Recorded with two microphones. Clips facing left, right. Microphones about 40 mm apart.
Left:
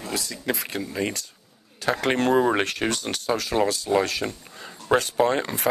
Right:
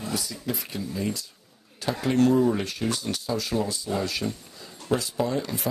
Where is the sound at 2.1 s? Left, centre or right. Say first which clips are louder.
Right 1 dB; left.